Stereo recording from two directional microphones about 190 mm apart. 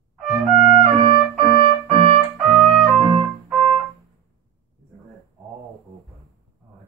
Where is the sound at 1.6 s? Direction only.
30° right (ahead or behind).